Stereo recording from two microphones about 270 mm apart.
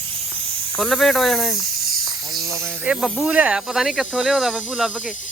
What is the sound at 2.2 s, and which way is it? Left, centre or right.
Speech, centre.